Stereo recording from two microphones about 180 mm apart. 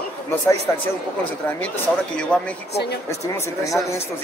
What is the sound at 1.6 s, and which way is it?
Speech, 5° left (ahead or behind).